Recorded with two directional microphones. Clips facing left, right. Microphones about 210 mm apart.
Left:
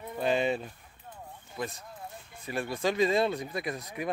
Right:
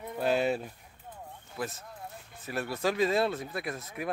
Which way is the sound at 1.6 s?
5° right (ahead or behind).